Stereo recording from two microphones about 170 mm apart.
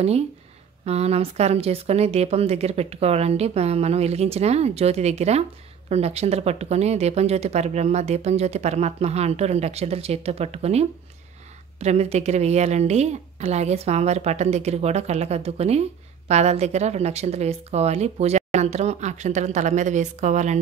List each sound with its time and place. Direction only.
0.8 s speech: 40° right (ahead or behind)